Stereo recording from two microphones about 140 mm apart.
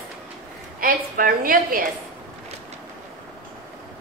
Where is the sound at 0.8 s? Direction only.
90° right.